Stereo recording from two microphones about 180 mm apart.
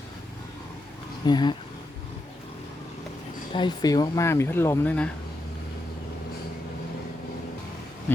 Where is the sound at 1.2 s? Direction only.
25° left (ahead or behind).